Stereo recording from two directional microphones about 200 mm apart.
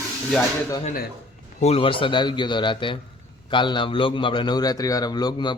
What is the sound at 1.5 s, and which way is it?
A man's voice, 30° left (ahead or behind).